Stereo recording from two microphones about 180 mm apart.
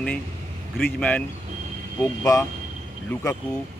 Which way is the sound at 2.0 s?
20° left (ahead or behind).